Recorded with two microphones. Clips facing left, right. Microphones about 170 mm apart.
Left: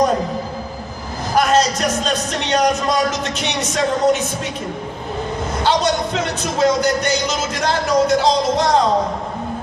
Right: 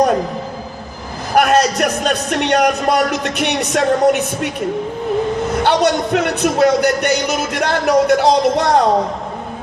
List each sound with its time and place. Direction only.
1.4 s a man's voice: 65° right (ahead or behind)
5.6 s a man's voice: 60° right (ahead or behind)